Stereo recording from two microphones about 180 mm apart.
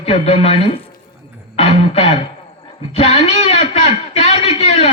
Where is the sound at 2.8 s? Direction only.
35° left (ahead or behind).